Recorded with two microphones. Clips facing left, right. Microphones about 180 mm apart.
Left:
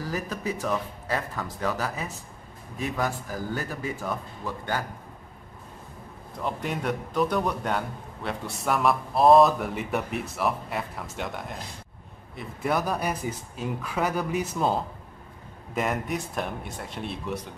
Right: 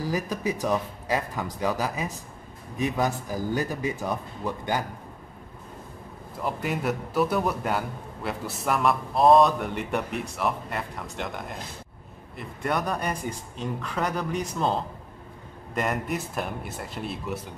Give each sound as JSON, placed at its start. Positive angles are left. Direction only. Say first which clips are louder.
{"t": 0.0, "sound": "speech", "louder": "right 3 dB", "side_deg": -15}
{"t": 6.3, "sound": "a man's voice", "louder": "right 1 dB", "side_deg": -5}